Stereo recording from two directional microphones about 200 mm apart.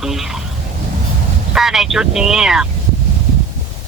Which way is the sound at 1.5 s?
Centre (ahead or behind).